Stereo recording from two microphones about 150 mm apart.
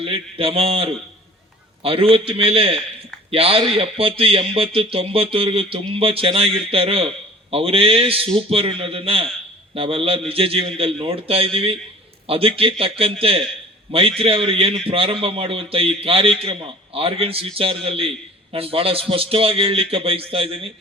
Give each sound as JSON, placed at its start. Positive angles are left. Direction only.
{"t": 0.0, "sound": "speech", "side_deg": -40}